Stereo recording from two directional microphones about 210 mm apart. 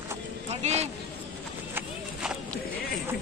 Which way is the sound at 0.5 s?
30° right (ahead or behind).